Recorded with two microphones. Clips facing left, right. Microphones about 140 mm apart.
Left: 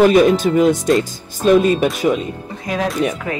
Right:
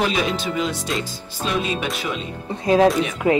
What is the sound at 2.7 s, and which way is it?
Speech, 30° right (ahead or behind).